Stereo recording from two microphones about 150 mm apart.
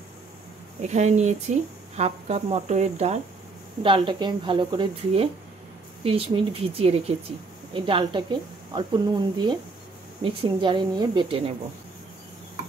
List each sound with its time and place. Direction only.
0.8 s a woman's voice: 50° right (ahead or behind)
3.8 s speech: 35° right (ahead or behind)